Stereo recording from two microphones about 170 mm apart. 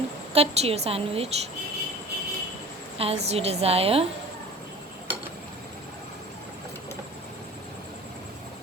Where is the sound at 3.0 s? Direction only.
35° right (ahead or behind).